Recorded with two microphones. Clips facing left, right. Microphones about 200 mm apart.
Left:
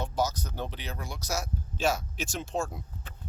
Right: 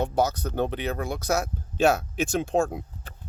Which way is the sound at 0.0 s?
60° right (ahead or behind).